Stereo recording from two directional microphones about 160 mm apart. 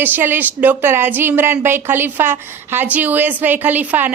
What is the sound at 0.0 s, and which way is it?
A woman's voice, 10° right (ahead or behind).